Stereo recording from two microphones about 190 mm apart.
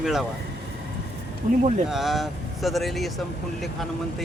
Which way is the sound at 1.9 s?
Centre (ahead or behind).